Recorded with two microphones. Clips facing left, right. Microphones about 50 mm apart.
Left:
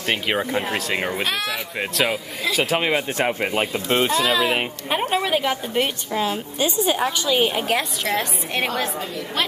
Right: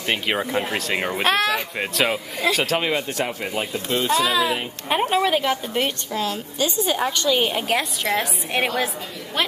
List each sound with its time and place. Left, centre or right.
0.1 s a woman's voice: centre
2.5 s speech: centre
3.2 s speech: left
4.2 s a woman's voice: centre
6.1 s a woman's voice: centre